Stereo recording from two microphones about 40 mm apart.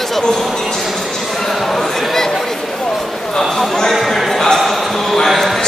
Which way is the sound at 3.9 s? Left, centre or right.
Centre.